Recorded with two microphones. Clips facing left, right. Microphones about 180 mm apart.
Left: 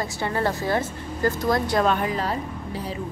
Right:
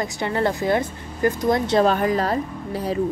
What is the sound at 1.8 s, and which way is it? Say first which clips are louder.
Speech: right 4 dB; 40° right (ahead or behind).